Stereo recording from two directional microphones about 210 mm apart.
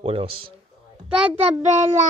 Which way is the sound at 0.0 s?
25° right (ahead or behind).